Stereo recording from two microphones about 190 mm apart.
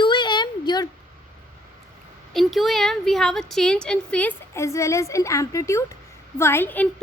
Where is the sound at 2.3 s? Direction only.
Centre (ahead or behind).